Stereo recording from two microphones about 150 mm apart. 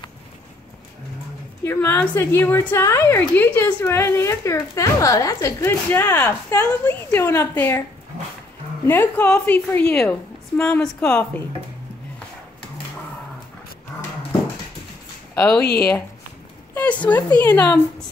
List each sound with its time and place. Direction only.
1.6 s a woman's voice: 15° left (ahead or behind)
8.8 s a woman's voice: 15° left (ahead or behind)
15.3 s speech: 5° left (ahead or behind)
16.7 s a woman's voice: 10° left (ahead or behind)